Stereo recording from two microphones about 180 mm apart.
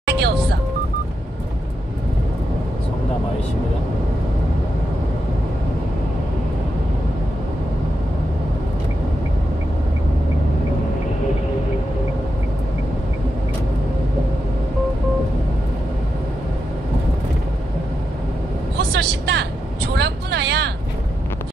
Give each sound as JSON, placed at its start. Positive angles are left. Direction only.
{"t": 0.0, "sound": "music", "side_deg": -70}
{"t": 18.9, "sound": "vehicle", "side_deg": -65}